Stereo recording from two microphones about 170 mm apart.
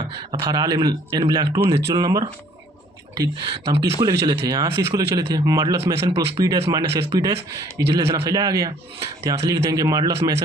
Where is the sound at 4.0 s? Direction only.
25° right (ahead or behind).